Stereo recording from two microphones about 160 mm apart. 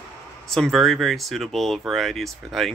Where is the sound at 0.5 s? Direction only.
Centre (ahead or behind).